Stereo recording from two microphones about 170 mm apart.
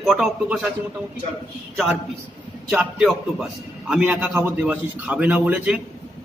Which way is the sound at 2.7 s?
5° right (ahead or behind).